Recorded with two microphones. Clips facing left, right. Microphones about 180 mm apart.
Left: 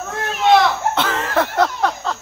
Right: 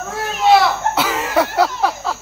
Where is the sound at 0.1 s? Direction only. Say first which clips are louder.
Right 1 dB; 5° right (ahead or behind).